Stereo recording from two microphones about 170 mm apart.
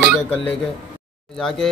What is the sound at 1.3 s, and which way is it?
Speech, 5° left (ahead or behind).